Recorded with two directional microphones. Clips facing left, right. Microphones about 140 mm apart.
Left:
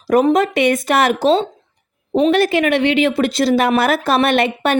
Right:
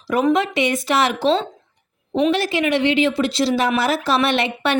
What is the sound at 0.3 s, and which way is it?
Speech, 50° left (ahead or behind).